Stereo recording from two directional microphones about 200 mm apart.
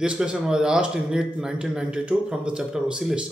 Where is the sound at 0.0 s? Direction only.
5° right (ahead or behind).